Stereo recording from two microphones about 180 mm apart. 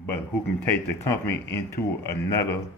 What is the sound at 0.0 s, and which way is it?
Speech, 10° left (ahead or behind).